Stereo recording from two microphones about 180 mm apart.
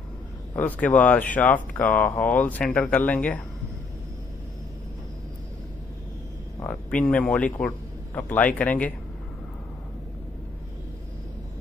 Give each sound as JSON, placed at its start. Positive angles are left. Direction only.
{"t": 0.6, "sound": "speech", "side_deg": 10}
{"t": 6.6, "sound": "a man's voice", "side_deg": 10}